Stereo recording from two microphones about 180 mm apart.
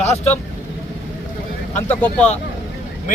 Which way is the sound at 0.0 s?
35° left (ahead or behind).